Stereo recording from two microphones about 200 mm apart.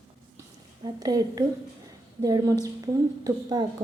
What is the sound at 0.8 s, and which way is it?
A woman's voice, 20° right (ahead or behind).